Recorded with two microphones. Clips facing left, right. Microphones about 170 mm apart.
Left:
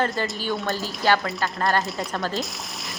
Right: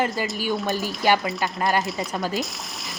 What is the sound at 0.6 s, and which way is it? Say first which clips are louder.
Speech: even; 20° right (ahead or behind).